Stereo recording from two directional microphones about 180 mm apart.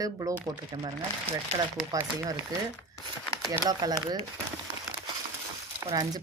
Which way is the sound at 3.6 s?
20° right (ahead or behind).